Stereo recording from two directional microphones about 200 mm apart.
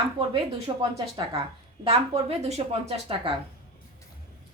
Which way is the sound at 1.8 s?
30° right (ahead or behind).